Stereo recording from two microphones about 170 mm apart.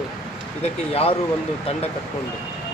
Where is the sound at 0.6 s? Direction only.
35° left (ahead or behind).